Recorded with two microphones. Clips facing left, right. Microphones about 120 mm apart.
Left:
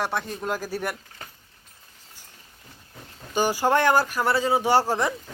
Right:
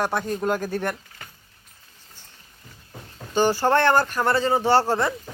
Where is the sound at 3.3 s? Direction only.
10° left (ahead or behind).